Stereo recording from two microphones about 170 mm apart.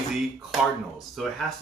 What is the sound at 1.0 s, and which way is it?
Speech, centre (ahead or behind).